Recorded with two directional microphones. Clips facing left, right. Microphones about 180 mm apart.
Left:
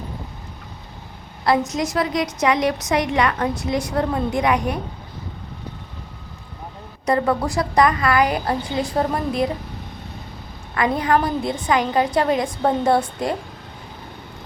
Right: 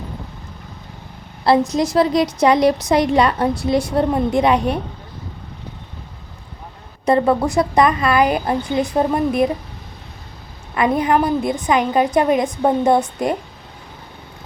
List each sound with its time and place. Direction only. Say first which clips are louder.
1.5 s a woman's voice: right 4 dB; 30° right (ahead or behind)
7.0 s a woman's voice: right 4 dB; 25° right (ahead or behind)
10.8 s a woman's voice: right 3 dB; 20° right (ahead or behind)